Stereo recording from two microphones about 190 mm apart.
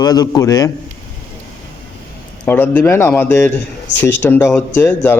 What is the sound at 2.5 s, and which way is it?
A man's voice, 10° left (ahead or behind).